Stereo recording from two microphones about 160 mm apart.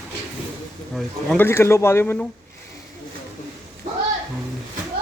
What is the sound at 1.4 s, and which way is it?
Speech, 15° left (ahead or behind).